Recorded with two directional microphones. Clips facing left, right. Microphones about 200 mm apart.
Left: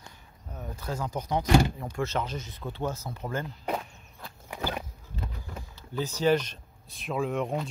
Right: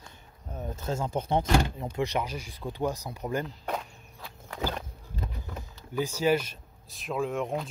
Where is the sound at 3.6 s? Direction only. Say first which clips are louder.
Left 2 dB; 5° left (ahead or behind).